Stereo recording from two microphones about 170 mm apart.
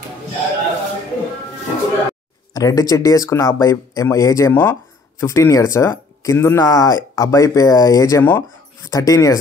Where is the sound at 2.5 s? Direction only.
20° left (ahead or behind).